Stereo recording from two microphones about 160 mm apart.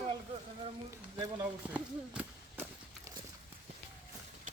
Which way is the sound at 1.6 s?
10° right (ahead or behind).